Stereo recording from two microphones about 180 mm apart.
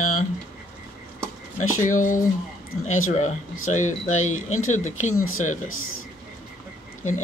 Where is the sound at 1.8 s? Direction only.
45° left (ahead or behind).